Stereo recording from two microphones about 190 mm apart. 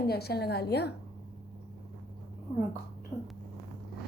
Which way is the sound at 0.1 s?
55° left (ahead or behind).